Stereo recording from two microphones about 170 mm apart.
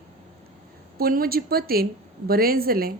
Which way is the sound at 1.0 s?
60° right (ahead or behind).